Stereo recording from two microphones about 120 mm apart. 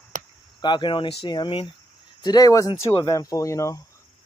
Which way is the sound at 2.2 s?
30° left (ahead or behind).